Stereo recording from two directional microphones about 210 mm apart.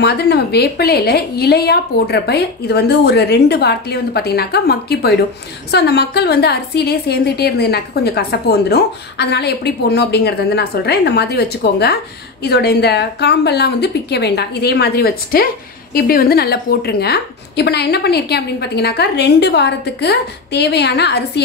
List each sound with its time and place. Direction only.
0.0 s a woman's voice: 50° left (ahead or behind)